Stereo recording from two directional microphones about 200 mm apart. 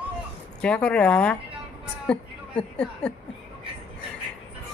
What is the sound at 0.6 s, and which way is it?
A woman's voice, 5° left (ahead or behind).